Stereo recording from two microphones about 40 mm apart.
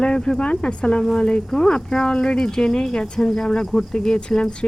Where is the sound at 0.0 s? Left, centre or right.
Left.